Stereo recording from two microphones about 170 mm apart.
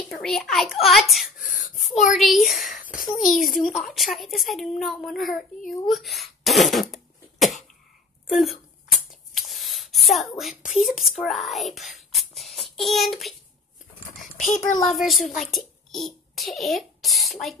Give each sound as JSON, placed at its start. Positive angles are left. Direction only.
{"t": 0.2, "sound": "a child's voice", "side_deg": 0}
{"t": 1.4, "sound": "whimper", "side_deg": 55}
{"t": 2.1, "sound": "a child's voice", "side_deg": 0}
{"t": 2.8, "sound": "a sound", "side_deg": 50}
{"t": 3.2, "sound": "a child's voice", "side_deg": 0}
{"t": 9.3, "sound": "a sound", "side_deg": 0}
{"t": 10.9, "sound": "speech", "side_deg": 0}
{"t": 14.1, "sound": "a sound", "side_deg": 0}
{"t": 14.6, "sound": "a child's voice", "side_deg": 20}
{"t": 15.0, "sound": "a child's voice", "side_deg": 0}